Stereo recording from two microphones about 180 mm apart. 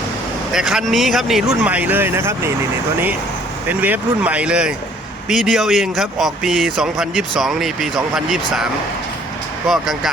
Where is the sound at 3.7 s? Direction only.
10° right (ahead or behind).